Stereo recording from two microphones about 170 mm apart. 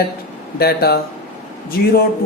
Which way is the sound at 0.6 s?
65° left (ahead or behind).